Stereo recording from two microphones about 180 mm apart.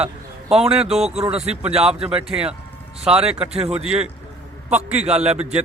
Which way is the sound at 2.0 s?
35° right (ahead or behind).